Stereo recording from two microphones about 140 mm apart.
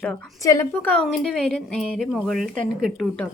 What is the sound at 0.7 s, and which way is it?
A woman's voice, 10° left (ahead or behind).